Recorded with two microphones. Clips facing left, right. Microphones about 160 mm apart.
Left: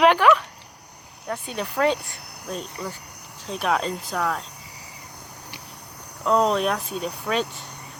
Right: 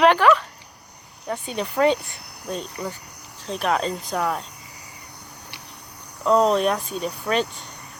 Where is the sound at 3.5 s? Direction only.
5° left (ahead or behind).